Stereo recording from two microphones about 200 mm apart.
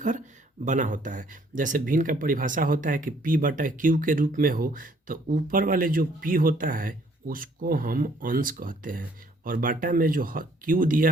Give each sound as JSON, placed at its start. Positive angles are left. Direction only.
{"t": 0.6, "sound": "speech", "side_deg": -40}